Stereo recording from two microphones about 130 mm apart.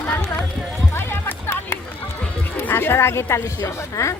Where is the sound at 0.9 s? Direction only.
20° left (ahead or behind).